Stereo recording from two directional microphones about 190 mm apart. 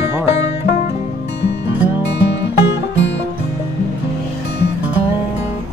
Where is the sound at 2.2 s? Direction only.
70° left (ahead or behind).